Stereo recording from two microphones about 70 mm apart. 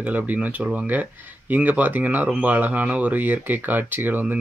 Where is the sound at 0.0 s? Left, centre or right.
Right.